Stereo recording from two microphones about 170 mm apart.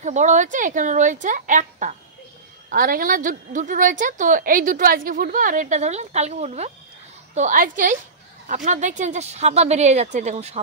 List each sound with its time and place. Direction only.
0.0 s a woman's voice: 45° right (ahead or behind)
2.7 s a woman's voice: 60° right (ahead or behind); by 6.7 s 40° right (ahead or behind)
7.3 s a woman's voice: 50° right (ahead or behind)